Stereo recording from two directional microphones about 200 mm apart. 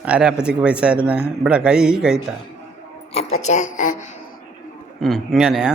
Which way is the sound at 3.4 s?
35° left (ahead or behind).